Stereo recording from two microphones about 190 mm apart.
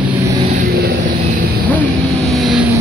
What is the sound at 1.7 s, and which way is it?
Vehicle, 5° left (ahead or behind).